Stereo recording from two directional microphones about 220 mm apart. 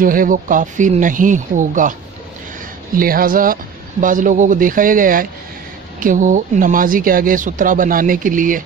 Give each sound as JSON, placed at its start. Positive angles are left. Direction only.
{"t": 0.0, "sound": "speech", "side_deg": -40}
{"t": 3.0, "sound": "speech", "side_deg": -40}